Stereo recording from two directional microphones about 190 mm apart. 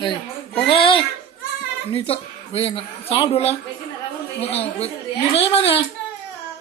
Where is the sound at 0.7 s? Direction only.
30° left (ahead or behind).